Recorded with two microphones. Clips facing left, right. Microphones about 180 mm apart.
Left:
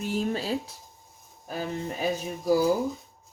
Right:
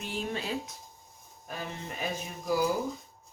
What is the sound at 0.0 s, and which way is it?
Speech, 40° left (ahead or behind).